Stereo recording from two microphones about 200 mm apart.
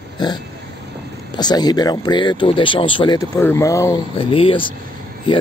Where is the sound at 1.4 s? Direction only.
20° left (ahead or behind).